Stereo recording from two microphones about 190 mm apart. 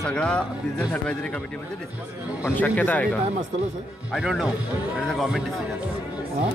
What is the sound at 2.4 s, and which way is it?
Speech, 10° left (ahead or behind).